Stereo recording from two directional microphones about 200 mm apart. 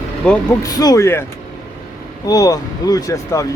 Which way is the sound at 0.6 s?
20° left (ahead or behind).